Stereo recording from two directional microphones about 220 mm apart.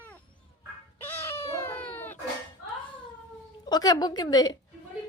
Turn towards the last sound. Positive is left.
turn(degrees=15)  # may be behind; listen again after turning